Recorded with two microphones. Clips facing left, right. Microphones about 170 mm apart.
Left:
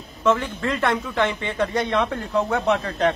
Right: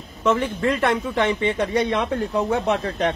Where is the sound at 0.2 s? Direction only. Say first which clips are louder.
Right 1 dB; 20° right (ahead or behind).